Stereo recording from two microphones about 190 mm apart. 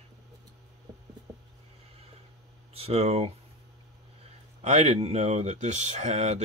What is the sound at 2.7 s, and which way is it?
Speech, 35° right (ahead or behind).